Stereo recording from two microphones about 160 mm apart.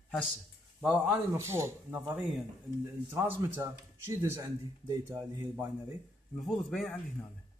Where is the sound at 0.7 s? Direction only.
10° right (ahead or behind).